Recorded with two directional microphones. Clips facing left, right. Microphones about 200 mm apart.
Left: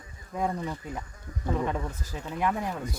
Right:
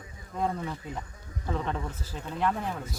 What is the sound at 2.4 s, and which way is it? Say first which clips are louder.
Speech: left 1 dB; 15° left (ahead or behind).